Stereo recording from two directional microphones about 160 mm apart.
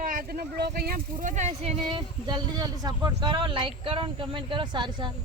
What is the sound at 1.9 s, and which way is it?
Speech, 25° right (ahead or behind).